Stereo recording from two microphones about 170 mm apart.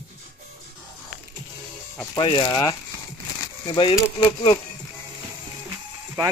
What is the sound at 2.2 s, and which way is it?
Speech, 30° left (ahead or behind).